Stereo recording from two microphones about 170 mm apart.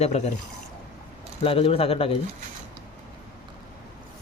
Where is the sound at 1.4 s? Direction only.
35° left (ahead or behind).